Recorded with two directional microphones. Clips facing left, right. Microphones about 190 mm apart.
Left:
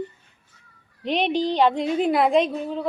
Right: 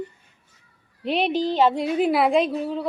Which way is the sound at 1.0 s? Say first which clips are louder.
Even; 5° right (ahead or behind).